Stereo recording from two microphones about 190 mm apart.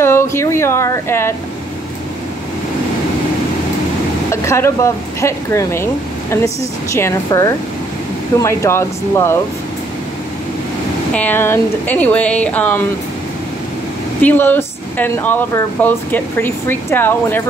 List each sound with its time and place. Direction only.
0.0 s a sound: 15° left (ahead or behind)
4.3 s speech: 15° left (ahead or behind)
11.1 s speech: 10° left (ahead or behind)
14.2 s speech: 10° left (ahead or behind)